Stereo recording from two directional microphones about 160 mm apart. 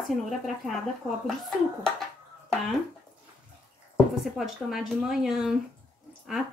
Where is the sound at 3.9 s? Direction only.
Centre (ahead or behind).